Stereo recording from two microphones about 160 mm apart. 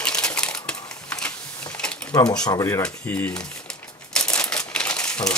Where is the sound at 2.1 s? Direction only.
25° left (ahead or behind).